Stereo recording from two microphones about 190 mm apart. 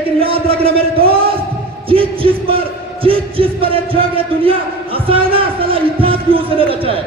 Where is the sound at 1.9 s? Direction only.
30° right (ahead or behind).